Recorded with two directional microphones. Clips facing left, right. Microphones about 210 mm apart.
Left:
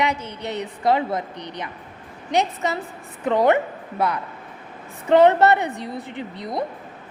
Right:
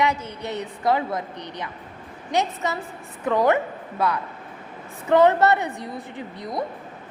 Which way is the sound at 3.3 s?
25° left (ahead or behind).